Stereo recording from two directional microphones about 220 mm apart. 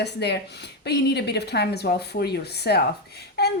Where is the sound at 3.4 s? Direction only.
45° left (ahead or behind).